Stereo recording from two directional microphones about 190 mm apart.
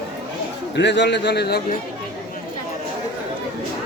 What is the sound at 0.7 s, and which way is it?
Speech, 65° left (ahead or behind).